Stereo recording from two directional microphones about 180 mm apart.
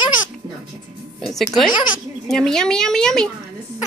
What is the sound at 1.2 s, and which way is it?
Speech, centre (ahead or behind).